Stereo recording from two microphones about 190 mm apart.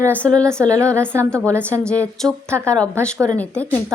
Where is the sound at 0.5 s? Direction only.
15° right (ahead or behind).